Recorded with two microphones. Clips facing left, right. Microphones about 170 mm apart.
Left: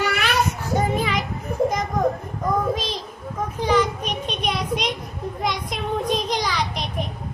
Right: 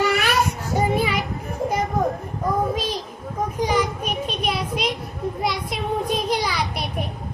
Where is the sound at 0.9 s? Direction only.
10° right (ahead or behind).